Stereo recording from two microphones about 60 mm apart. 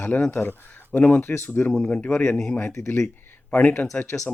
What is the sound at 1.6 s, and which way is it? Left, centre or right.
Speech, centre.